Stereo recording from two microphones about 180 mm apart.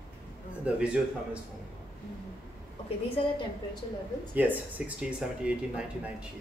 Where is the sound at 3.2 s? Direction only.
30° left (ahead or behind).